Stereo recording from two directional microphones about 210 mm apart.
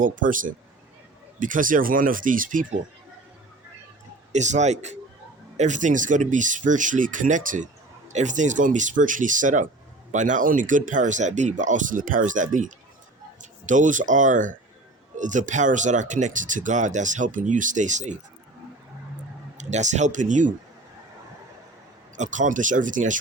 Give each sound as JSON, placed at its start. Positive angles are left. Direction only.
{"t": 0.0, "sound": "speech", "side_deg": -40}
{"t": 4.3, "sound": "speech", "side_deg": -35}
{"t": 19.5, "sound": "speech", "side_deg": -35}
{"t": 22.1, "sound": "speech", "side_deg": -35}